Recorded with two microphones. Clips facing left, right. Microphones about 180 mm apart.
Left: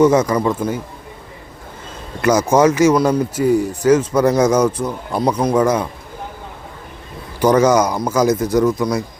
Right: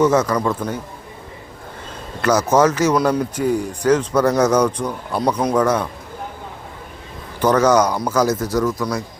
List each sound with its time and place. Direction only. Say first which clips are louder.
0.0 s a man's voice: left 3 dB; 15° left (ahead or behind)
2.2 s speech: left 2 dB; 10° left (ahead or behind)
7.3 s speech: left 2 dB; 10° left (ahead or behind)